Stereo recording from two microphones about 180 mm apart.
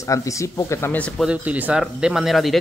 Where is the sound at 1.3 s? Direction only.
10° right (ahead or behind).